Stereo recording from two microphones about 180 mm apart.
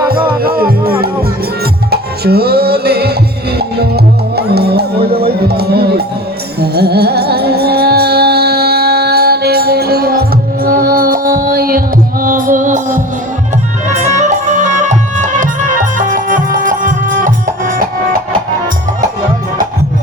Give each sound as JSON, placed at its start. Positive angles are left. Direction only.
{"t": 0.1, "sound": "music", "side_deg": -55}